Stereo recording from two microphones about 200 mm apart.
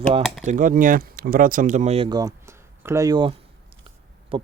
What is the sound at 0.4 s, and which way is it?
Speech, 45° right (ahead or behind).